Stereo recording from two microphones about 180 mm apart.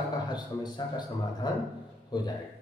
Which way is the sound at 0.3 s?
25° left (ahead or behind).